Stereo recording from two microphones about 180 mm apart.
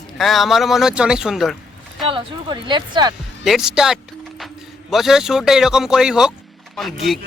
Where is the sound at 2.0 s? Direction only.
25° right (ahead or behind).